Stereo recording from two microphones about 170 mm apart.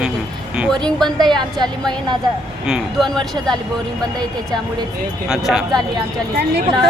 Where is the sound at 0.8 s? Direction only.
Centre (ahead or behind).